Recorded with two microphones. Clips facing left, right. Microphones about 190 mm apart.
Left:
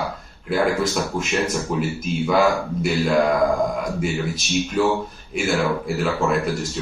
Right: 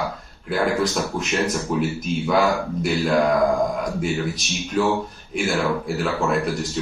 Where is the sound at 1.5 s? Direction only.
Centre (ahead or behind).